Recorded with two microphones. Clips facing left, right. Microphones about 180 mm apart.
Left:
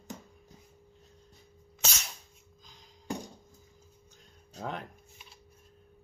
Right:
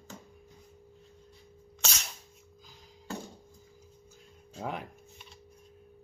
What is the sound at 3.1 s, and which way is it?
Music, 15° left (ahead or behind).